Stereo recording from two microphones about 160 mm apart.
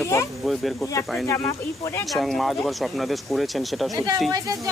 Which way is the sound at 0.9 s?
20° left (ahead or behind).